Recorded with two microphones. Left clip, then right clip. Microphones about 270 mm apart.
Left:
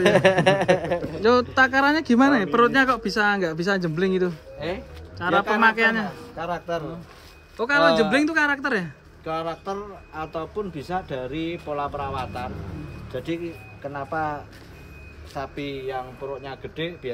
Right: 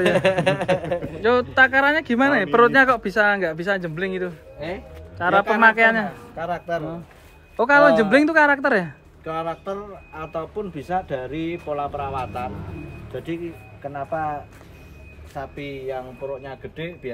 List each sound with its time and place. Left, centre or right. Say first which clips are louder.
0.0 s speech: left 1 dB; left
1.2 s a man's voice: right 2 dB; centre
5.2 s a man's voice: right 3 dB; centre
7.5 s a man's voice: right 4 dB; centre